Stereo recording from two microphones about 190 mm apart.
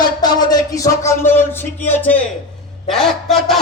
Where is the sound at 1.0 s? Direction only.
15° left (ahead or behind).